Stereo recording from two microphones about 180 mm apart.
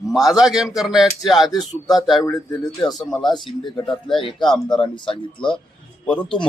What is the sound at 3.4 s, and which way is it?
Speech, 25° left (ahead or behind).